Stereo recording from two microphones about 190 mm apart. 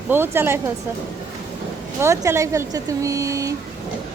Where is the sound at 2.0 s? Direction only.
15° right (ahead or behind).